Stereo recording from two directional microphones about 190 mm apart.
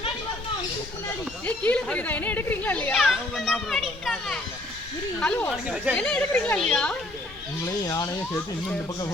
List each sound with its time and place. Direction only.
1.2 s speech: 5° left (ahead or behind)
7.9 s speech: 20° left (ahead or behind)